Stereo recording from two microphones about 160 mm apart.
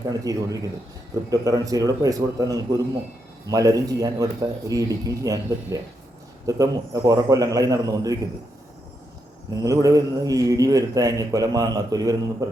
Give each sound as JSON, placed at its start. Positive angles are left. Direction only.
{"t": 0.1, "sound": "a man's voice", "side_deg": -20}
{"t": 9.6, "sound": "a man's voice", "side_deg": -20}